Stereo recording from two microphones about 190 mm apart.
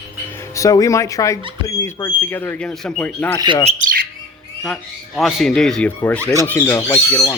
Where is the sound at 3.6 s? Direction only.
45° right (ahead or behind).